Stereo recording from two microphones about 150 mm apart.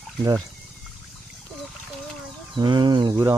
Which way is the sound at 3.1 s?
20° right (ahead or behind).